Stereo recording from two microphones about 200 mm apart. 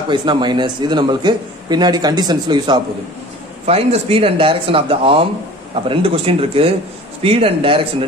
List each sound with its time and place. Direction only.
0.1 s a man's voice: 25° right (ahead or behind)